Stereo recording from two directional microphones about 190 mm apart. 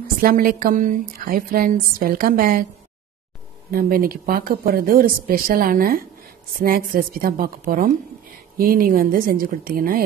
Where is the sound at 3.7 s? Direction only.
50° right (ahead or behind).